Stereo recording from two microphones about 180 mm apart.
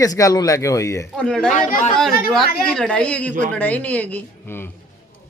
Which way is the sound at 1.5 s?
45° left (ahead or behind).